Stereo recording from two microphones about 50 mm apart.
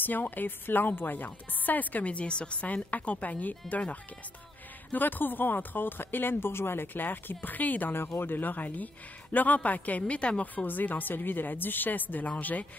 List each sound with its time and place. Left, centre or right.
0.0 s a woman's voice: left
4.9 s a woman's voice: left
7.9 s a woman's voice: left
10.5 s a woman's voice: left